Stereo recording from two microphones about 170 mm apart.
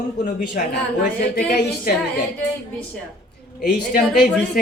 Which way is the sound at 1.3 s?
70° left (ahead or behind).